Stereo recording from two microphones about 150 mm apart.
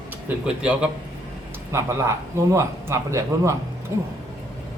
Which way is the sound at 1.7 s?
20° right (ahead or behind).